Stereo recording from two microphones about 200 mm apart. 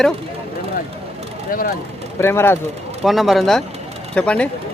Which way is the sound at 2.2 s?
10° left (ahead or behind).